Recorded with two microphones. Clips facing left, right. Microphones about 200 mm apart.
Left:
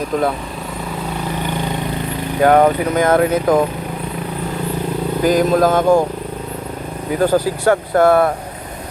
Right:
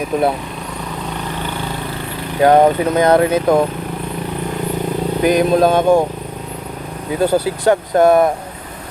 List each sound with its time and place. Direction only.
2.4 s speech: 20° right (ahead or behind)
5.2 s speech: 20° right (ahead or behind)
7.2 s speech: 15° right (ahead or behind)